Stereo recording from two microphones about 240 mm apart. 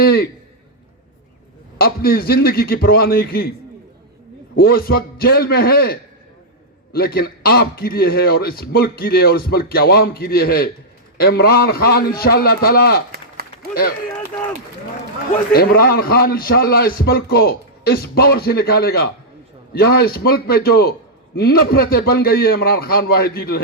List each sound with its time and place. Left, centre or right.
0.0 s a man's voice: left
1.8 s a man's voice: left
4.5 s a man's voice: left
13.1 s a sound: right
15.5 s a man's voice: left